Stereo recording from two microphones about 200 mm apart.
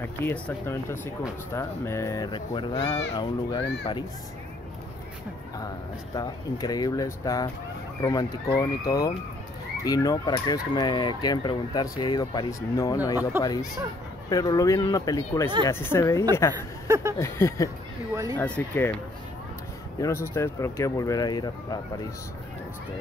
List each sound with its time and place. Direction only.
0.2 s speech: 10° left (ahead or behind)
1.5 s fowl: 15° left (ahead or behind)
6.1 s fowl: 20° left (ahead or behind)
14.3 s speech: 15° left (ahead or behind)
16.8 s speech: 15° right (ahead or behind)
17.2 s speech: 15° left (ahead or behind)
18.1 s speech: 15° right (ahead or behind)
18.4 s speech: 5° left (ahead or behind)
20.0 s speech: 15° left (ahead or behind)